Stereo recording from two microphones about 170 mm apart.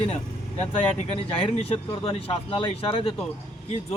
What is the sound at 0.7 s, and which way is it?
Speech, 35° left (ahead or behind).